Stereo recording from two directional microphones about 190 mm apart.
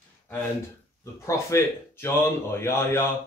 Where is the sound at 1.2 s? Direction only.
15° left (ahead or behind).